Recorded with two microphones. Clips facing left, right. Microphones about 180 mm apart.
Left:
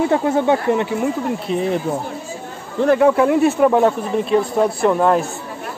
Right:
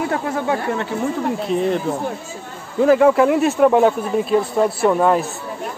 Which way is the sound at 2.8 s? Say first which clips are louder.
Right 1 dB; centre (ahead or behind).